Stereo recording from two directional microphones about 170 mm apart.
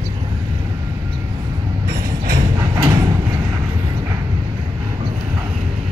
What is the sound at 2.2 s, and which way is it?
Mechanisms, 55° right (ahead or behind).